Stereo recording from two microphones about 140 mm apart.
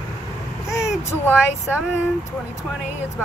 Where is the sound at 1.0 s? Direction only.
15° left (ahead or behind).